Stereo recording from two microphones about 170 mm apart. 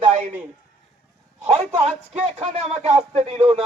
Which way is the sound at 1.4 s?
40° right (ahead or behind).